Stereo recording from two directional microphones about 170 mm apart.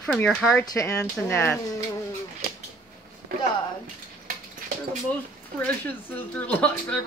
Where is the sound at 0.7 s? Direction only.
15° left (ahead or behind).